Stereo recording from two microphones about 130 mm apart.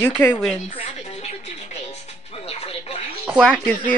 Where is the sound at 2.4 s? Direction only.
50° left (ahead or behind).